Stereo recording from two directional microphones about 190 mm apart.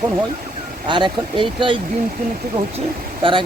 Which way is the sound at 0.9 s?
25° right (ahead or behind).